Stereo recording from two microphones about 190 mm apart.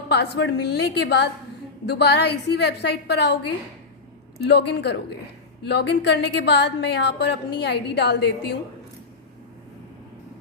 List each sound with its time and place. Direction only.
0.1 s a woman's voice: 65° left (ahead or behind)
4.4 s a woman's voice: 60° left (ahead or behind)